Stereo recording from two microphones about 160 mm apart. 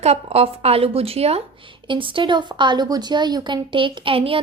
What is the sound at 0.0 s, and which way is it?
Speech, 40° right (ahead or behind).